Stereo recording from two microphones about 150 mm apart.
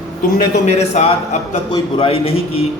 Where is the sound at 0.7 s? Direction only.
45° left (ahead or behind).